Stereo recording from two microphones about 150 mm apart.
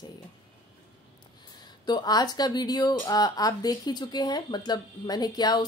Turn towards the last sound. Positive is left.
turn(degrees=25)  # may be behind; listen again after turning